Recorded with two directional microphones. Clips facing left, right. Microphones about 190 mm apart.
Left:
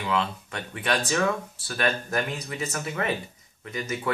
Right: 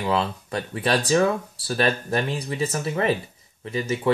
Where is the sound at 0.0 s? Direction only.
35° right (ahead or behind).